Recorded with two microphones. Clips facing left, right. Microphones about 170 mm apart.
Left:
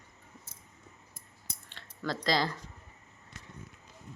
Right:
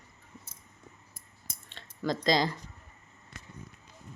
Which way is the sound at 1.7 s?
20° right (ahead or behind).